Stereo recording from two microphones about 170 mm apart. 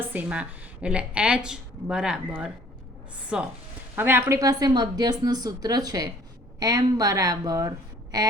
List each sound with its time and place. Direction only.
0.0 s a woman's voice: 10° right (ahead or behind)